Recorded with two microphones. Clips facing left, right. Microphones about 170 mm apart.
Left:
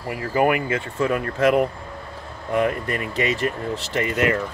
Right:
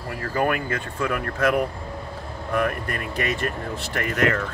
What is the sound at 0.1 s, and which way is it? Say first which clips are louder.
Speech: left 4 dB; 15° left (ahead or behind).